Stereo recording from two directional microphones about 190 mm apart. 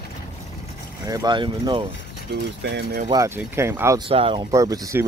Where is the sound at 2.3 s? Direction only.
60° right (ahead or behind).